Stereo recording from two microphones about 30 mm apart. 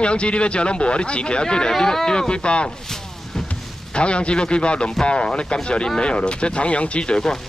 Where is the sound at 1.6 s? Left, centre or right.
Centre; by 2.7 s left.